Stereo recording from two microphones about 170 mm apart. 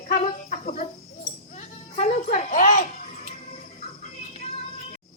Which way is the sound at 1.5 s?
45° left (ahead or behind).